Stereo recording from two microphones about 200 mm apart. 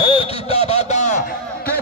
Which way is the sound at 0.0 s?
30° left (ahead or behind).